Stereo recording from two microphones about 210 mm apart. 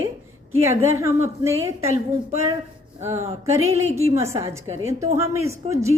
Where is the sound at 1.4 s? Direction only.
15° right (ahead or behind).